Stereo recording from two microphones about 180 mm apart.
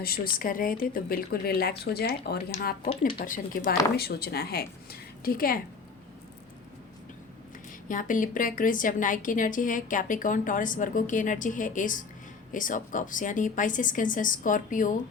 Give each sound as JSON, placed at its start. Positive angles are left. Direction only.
{"t": 0.3, "sound": "a woman's voice", "side_deg": 50}
{"t": 3.9, "sound": "a woman's voice", "side_deg": 60}
{"t": 7.9, "sound": "a woman's voice", "side_deg": 45}